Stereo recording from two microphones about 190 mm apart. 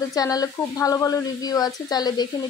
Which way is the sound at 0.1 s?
20° left (ahead or behind).